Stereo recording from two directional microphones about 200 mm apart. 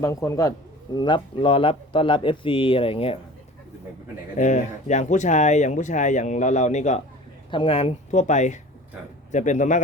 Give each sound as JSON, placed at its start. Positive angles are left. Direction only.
{"t": 0.0, "sound": "speech", "side_deg": 15}
{"t": 4.4, "sound": "speech", "side_deg": 35}